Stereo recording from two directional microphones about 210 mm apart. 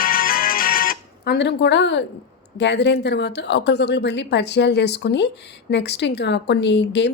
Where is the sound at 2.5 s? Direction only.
55° left (ahead or behind).